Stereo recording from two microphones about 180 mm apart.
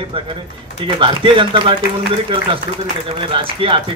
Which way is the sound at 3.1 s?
30° right (ahead or behind).